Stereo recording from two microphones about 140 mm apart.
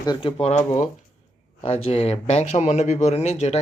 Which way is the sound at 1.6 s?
45° left (ahead or behind).